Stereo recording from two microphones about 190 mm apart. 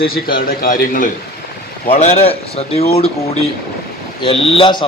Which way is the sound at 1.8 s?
35° left (ahead or behind).